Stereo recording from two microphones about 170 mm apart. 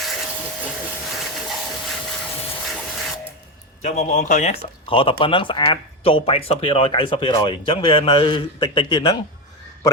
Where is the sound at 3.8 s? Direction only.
45° left (ahead or behind).